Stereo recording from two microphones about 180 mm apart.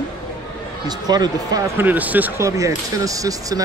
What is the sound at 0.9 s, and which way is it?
Speech, 20° right (ahead or behind).